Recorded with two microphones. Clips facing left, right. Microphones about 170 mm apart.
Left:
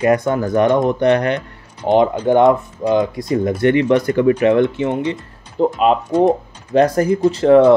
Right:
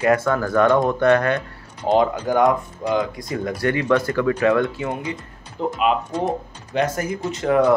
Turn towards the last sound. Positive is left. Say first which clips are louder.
# left 7 dB
turn(degrees=30)  # may be behind; listen again after turning